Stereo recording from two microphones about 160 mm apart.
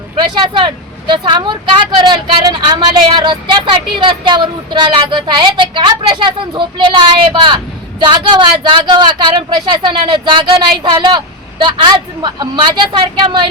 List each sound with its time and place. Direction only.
0.2 s speech: 30° right (ahead or behind)